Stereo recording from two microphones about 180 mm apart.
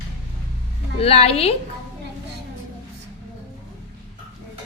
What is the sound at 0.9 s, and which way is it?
Speech, 35° left (ahead or behind).